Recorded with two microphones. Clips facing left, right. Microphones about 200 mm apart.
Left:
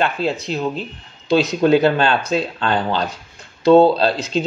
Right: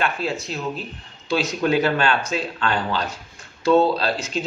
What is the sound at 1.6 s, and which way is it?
Speech, 30° left (ahead or behind).